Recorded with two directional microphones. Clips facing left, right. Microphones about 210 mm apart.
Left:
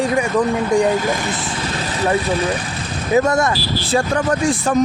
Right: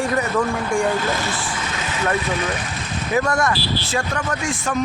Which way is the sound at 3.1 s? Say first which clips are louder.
Left 5 dB; 25° left (ahead or behind).